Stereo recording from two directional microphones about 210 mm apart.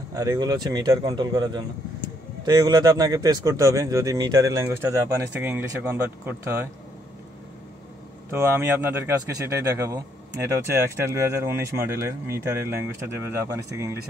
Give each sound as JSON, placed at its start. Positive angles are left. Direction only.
{"t": 0.1, "sound": "speech", "side_deg": -15}
{"t": 8.3, "sound": "speech", "side_deg": -10}